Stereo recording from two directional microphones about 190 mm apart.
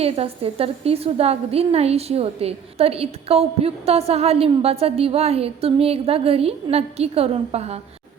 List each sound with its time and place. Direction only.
0.0 s a woman's voice: 30° right (ahead or behind)